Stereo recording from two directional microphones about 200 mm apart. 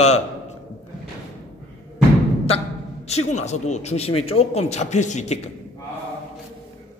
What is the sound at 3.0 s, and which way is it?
A man's voice, 35° left (ahead or behind).